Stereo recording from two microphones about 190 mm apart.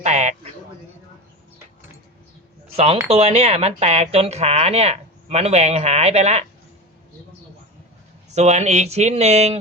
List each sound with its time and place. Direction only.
0.0 s a sound: 35° right (ahead or behind)
2.7 s speech: 30° right (ahead or behind)
8.3 s speech: 35° right (ahead or behind)